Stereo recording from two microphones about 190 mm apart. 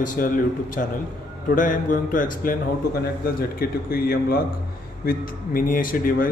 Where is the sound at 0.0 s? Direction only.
45° left (ahead or behind).